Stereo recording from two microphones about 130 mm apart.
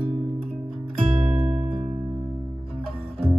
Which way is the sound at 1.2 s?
60° right (ahead or behind).